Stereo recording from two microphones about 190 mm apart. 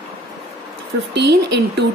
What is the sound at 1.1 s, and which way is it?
Speech, 60° right (ahead or behind).